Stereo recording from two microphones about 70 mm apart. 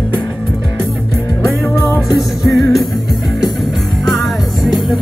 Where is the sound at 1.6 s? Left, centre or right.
Left.